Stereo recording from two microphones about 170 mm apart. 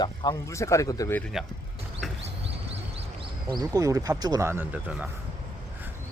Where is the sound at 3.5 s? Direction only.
20° right (ahead or behind).